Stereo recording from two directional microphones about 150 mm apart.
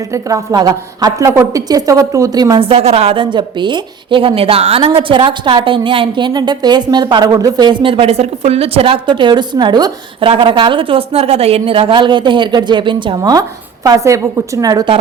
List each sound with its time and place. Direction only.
0.1 s a woman's voice: 20° right (ahead or behind)
2.6 s a woman's voice: 40° right (ahead or behind)